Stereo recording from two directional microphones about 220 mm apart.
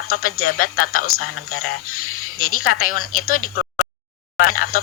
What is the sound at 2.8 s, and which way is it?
Speech, 40° left (ahead or behind).